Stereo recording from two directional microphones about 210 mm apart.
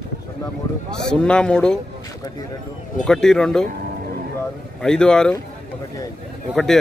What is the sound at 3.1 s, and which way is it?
Speech, 5° left (ahead or behind).